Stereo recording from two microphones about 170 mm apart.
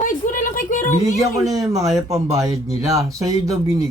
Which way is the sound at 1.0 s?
20° right (ahead or behind).